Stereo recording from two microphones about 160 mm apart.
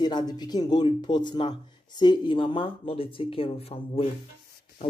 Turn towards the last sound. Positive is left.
turn(degrees=35)  # may be behind; listen again after turning